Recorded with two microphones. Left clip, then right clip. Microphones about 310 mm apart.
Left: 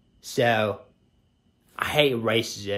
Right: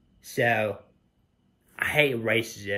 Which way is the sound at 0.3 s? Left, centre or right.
Centre.